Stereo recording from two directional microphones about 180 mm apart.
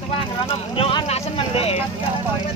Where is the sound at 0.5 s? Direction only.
30° left (ahead or behind).